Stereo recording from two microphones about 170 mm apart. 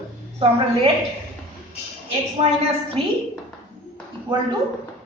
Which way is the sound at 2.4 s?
35° right (ahead or behind).